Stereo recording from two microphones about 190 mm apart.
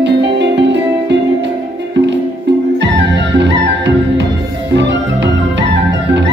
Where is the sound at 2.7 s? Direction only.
70° right (ahead or behind).